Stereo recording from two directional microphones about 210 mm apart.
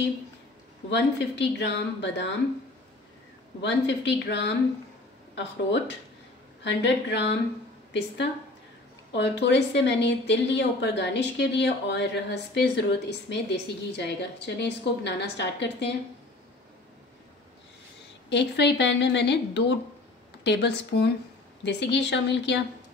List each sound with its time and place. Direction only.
0.8 s a woman's voice: 55° left (ahead or behind)
3.6 s a woman's voice: 55° left (ahead or behind)
9.1 s a woman's voice: 55° left (ahead or behind)
18.3 s a woman's voice: 55° left (ahead or behind)